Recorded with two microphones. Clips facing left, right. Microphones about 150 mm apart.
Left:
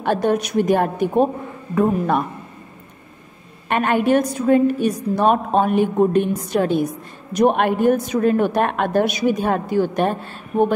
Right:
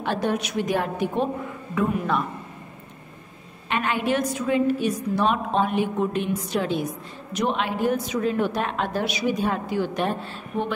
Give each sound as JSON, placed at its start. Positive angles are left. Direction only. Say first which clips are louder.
{"t": 0.0, "sound": "a woman's voice", "louder": "left 6 dB", "side_deg": 50}
{"t": 3.6, "sound": "a woman's voice", "louder": "left 7 dB", "side_deg": 50}